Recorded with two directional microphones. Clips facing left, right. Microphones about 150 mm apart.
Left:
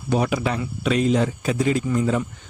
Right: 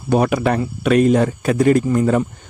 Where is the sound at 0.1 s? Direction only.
55° right (ahead or behind).